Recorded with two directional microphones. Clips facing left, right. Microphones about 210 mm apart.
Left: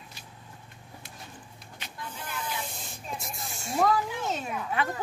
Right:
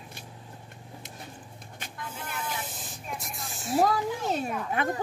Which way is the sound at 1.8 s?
50° right (ahead or behind).